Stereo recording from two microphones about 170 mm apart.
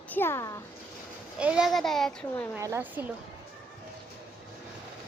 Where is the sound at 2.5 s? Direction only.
15° right (ahead or behind).